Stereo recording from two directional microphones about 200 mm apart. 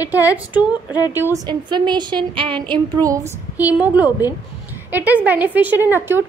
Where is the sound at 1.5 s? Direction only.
20° right (ahead or behind).